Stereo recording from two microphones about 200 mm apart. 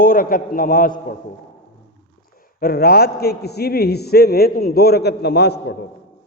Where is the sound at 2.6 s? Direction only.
50° left (ahead or behind).